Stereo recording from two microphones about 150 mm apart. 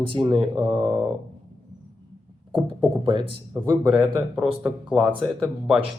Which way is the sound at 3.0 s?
30° right (ahead or behind).